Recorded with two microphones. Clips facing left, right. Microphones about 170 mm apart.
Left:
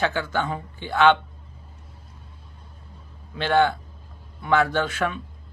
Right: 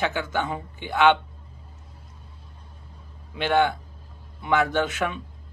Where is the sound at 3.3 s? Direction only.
15° right (ahead or behind).